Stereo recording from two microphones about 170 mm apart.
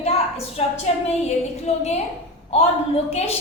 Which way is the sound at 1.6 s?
40° left (ahead or behind).